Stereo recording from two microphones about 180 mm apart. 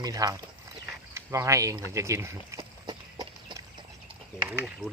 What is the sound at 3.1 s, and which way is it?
Chicken, 25° right (ahead or behind).